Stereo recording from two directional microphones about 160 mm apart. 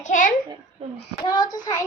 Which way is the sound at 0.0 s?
55° left (ahead or behind).